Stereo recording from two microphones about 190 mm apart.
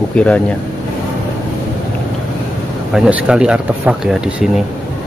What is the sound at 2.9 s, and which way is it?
Speech, 5° right (ahead or behind).